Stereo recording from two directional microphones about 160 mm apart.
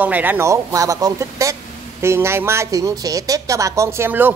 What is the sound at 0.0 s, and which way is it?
Speech, 10° right (ahead or behind).